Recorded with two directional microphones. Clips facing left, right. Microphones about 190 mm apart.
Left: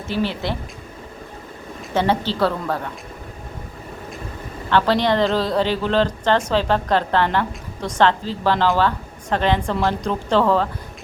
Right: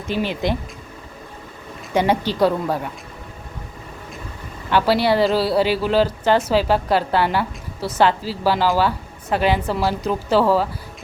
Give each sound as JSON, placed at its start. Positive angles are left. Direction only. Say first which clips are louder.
{"t": 0.1, "sound": "speech", "louder": "right 1 dB", "side_deg": -15}
{"t": 1.9, "sound": "speech", "louder": "right 1 dB", "side_deg": -15}
{"t": 4.7, "sound": "speech", "louder": "right 1 dB", "side_deg": -10}